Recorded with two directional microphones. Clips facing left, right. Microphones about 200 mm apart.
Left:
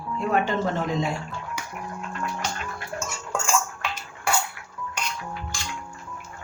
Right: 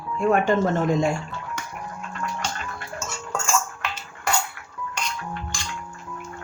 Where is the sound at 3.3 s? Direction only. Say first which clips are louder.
Even; 10° left (ahead or behind).